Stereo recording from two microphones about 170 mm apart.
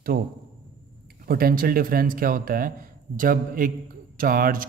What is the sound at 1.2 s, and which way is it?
A man's voice, 60° right (ahead or behind).